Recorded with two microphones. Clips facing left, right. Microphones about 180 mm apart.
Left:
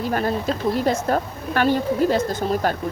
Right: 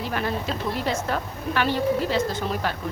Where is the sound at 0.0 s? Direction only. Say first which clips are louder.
Left 5 dB; 40° left (ahead or behind).